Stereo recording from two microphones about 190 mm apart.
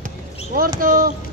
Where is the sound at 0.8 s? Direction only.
50° right (ahead or behind).